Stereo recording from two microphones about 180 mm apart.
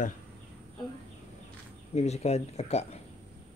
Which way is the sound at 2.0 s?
35° left (ahead or behind).